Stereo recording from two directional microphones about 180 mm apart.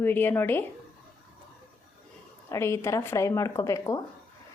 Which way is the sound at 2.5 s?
15° left (ahead or behind).